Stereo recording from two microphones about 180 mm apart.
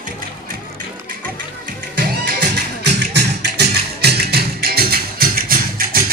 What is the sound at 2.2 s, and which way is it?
Music, 65° right (ahead or behind).